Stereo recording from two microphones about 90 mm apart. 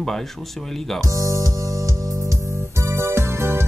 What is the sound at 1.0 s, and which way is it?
Music, 35° right (ahead or behind).